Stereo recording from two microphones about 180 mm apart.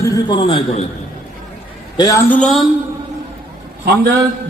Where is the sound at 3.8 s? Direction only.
70° right (ahead or behind).